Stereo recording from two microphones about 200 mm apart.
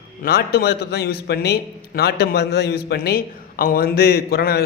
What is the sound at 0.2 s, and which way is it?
A man's voice, 50° left (ahead or behind).